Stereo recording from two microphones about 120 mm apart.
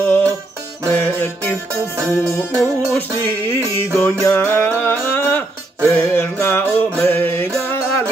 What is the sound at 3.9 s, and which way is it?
Music, 20° left (ahead or behind).